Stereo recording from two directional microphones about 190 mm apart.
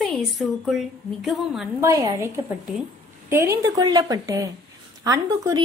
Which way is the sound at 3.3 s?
15° right (ahead or behind).